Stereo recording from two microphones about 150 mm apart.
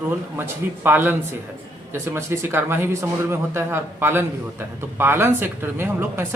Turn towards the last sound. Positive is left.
turn(degrees=-15)  # may be behind; listen again after turning